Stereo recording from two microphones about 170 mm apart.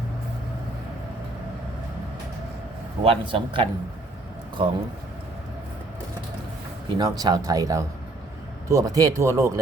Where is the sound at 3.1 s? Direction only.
30° right (ahead or behind).